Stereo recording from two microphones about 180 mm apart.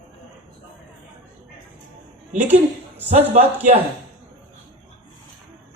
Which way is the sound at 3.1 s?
40° right (ahead or behind).